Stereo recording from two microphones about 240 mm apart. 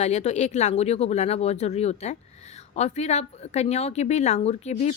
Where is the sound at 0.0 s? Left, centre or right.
Left.